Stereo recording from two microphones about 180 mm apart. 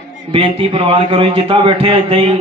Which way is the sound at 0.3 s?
30° right (ahead or behind).